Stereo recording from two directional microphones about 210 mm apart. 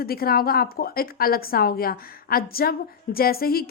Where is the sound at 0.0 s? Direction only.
45° left (ahead or behind).